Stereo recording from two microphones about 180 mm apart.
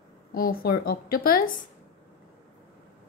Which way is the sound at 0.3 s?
55° left (ahead or behind).